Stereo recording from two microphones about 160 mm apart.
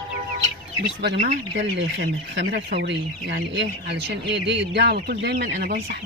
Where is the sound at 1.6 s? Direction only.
90° right.